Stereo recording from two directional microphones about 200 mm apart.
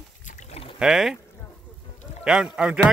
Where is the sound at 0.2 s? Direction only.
35° left (ahead or behind).